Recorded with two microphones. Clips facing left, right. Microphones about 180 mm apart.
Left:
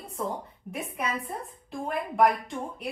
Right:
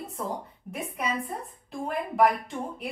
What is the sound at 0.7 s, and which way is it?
A woman's voice, centre (ahead or behind).